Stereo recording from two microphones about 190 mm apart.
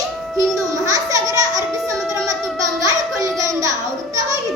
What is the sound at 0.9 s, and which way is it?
Music, 20° right (ahead or behind).